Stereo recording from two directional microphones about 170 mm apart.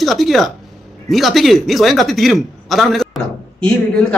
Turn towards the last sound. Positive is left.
turn(degrees=5)  # may be behind; listen again after turning